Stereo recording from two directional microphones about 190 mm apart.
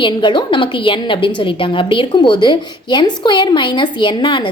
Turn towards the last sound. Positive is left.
turn(degrees=25)  # may be behind; listen again after turning